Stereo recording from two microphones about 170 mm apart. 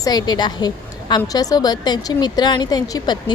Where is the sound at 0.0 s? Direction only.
25° left (ahead or behind).